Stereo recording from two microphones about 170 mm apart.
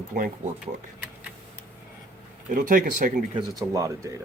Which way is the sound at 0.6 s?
5° right (ahead or behind).